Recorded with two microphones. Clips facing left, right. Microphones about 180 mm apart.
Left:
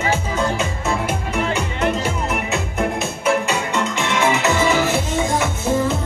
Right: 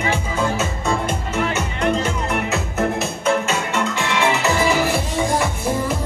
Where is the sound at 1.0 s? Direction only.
10° left (ahead or behind).